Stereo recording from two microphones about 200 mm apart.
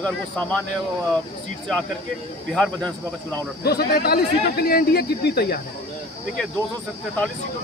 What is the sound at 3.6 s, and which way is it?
Speech, 50° left (ahead or behind).